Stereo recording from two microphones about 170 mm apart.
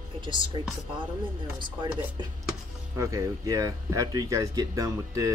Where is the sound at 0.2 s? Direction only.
30° right (ahead or behind).